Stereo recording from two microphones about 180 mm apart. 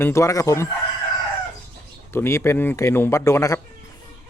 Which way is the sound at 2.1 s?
15° left (ahead or behind).